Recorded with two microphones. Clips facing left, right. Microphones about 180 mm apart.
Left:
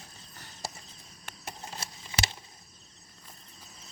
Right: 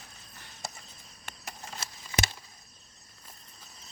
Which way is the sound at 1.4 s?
25° left (ahead or behind).